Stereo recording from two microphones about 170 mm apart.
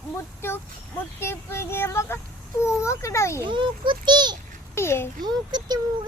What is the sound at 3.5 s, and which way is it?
Speech, 30° right (ahead or behind).